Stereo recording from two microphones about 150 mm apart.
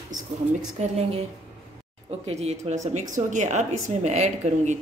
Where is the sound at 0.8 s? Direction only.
45° right (ahead or behind).